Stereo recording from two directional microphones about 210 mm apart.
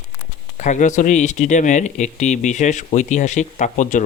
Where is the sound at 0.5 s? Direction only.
35° left (ahead or behind).